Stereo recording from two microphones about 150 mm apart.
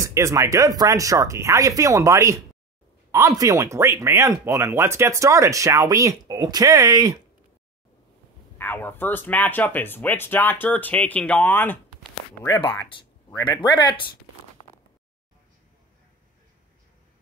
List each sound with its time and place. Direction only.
0.0 s speech: 20° right (ahead or behind)
8.5 s speech: 10° left (ahead or behind)
12.9 s speech: 35° left (ahead or behind)